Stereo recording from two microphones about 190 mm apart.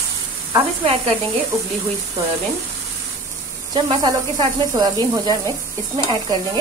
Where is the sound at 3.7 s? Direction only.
20° right (ahead or behind).